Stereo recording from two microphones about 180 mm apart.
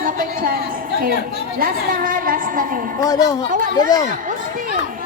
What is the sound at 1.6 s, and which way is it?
Speech, 50° right (ahead or behind).